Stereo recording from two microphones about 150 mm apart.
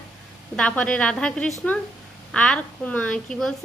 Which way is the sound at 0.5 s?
10° left (ahead or behind).